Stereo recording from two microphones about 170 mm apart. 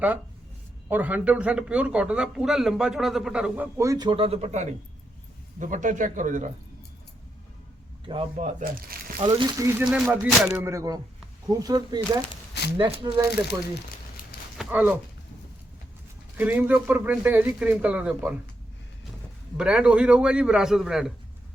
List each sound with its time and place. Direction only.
0.9 s a man's voice: 10° right (ahead or behind); by 6.5 s 50° right (ahead or behind)
8.0 s speech: 30° right (ahead or behind)
8.6 s speech: 60° right (ahead or behind)
9.2 s speech: 30° right (ahead or behind)
9.6 s a man's voice: 10° right (ahead or behind)
10.7 s speech: 20° right (ahead or behind)
14.6 s speech: 10° right (ahead or behind)
16.4 s a man's voice: 10° right (ahead or behind)
19.5 s a man's voice: 5° right (ahead or behind)